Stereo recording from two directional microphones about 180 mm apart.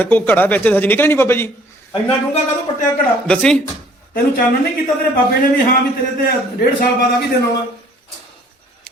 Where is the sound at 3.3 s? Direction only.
5° left (ahead or behind).